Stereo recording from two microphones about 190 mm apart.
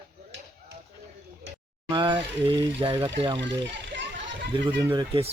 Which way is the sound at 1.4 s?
65° right (ahead or behind).